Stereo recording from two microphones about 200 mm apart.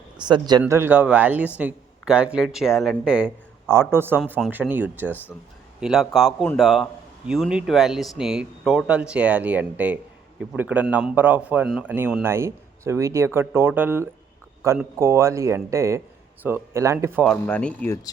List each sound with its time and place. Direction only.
0.2 s a man's voice: 20° right (ahead or behind)
0.6 s a man's voice: 10° right (ahead or behind)
17.2 s speech: 5° left (ahead or behind)